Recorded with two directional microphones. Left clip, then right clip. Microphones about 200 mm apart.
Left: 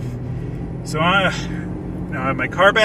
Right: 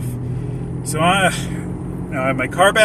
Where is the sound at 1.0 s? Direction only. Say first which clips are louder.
Right 1 dB; 25° right (ahead or behind).